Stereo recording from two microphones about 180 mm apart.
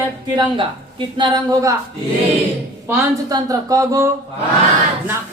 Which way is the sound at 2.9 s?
20° right (ahead or behind).